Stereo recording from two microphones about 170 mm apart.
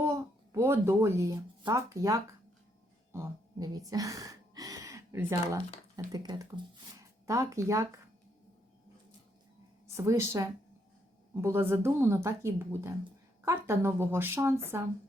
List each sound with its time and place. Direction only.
0.0 s speech: 15° right (ahead or behind)
3.1 s a sound: 15° right (ahead or behind)
6.1 s a woman's voice: 25° right (ahead or behind)
9.9 s a woman's voice: 15° right (ahead or behind)